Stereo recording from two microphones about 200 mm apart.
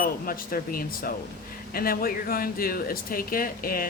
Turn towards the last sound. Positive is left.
turn(degrees=45)  # may be behind; listen again after turning